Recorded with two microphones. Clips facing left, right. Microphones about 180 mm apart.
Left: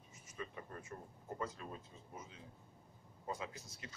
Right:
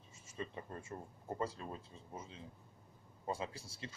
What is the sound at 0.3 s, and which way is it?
Speech, 25° right (ahead or behind).